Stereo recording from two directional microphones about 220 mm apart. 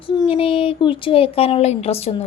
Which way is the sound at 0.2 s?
25° left (ahead or behind).